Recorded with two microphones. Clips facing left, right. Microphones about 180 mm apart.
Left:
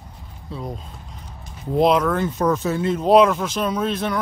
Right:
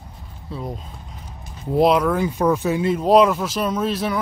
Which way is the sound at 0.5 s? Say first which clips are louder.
Right 1 dB; centre (ahead or behind).